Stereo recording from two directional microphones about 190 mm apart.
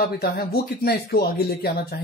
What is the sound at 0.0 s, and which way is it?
Speech, 55° left (ahead or behind).